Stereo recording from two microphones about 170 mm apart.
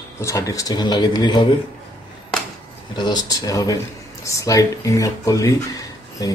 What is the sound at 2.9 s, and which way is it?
Speech, 25° left (ahead or behind).